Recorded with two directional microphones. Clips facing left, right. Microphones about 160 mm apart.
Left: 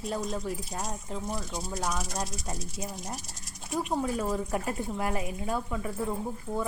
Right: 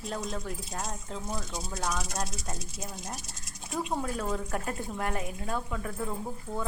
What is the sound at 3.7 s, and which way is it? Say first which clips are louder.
Speech: left 3 dB; 10° left (ahead or behind).